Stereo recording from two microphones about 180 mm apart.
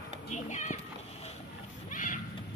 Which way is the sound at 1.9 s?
45° left (ahead or behind).